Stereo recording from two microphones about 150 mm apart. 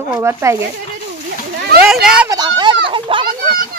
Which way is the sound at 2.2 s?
25° right (ahead or behind).